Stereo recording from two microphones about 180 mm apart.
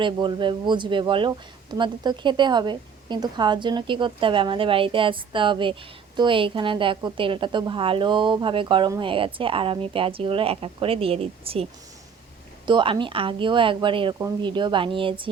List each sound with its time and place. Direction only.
0.0 s a woman's voice: 25° right (ahead or behind)